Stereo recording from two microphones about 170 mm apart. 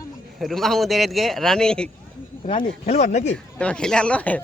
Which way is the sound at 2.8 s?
40° left (ahead or behind).